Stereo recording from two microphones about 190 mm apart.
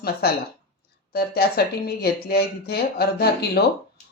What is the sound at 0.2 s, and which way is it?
Speech, 55° left (ahead or behind).